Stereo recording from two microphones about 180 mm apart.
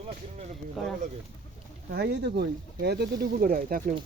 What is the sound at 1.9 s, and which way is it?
Speech, 60° right (ahead or behind).